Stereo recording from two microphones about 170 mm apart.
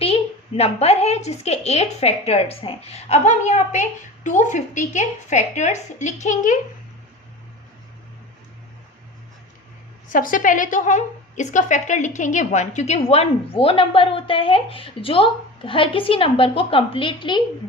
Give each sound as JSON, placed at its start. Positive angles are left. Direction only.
{"t": 0.0, "sound": "a woman's voice", "side_deg": 35}
{"t": 10.1, "sound": "a woman's voice", "side_deg": 55}